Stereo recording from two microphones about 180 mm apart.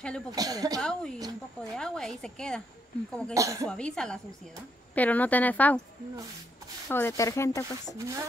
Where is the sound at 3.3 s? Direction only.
15° right (ahead or behind).